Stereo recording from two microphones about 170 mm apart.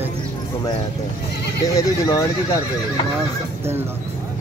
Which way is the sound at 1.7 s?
20° left (ahead or behind).